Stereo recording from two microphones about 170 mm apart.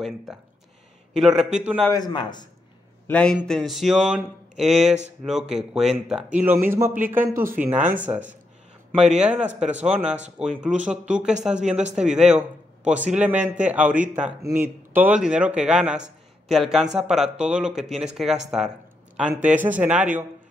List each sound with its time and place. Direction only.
1.1 s speech: 5° right (ahead or behind)
1.9 s a man's voice: 25° left (ahead or behind)
3.1 s a man's voice: 5° left (ahead or behind); by 6.9 s 15° right (ahead or behind)
7.4 s speech: 50° right (ahead or behind)
8.0 s a man's voice: 10° right (ahead or behind)